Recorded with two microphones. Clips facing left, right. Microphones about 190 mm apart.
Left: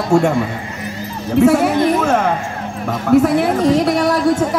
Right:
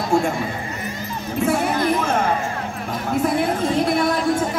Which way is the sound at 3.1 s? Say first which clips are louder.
Left 8 dB; 75° left (ahead or behind).